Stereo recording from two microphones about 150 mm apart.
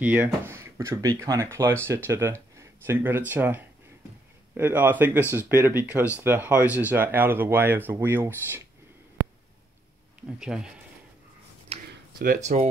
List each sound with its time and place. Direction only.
0.0 s speech: 15° right (ahead or behind)
10.4 s speech: 5° right (ahead or behind)
12.4 s speech: 50° right (ahead or behind)